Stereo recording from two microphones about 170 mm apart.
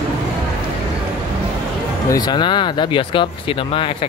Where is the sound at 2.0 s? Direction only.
25° left (ahead or behind).